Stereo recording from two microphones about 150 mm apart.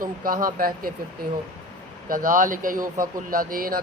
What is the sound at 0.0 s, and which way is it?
Speech, 70° right (ahead or behind).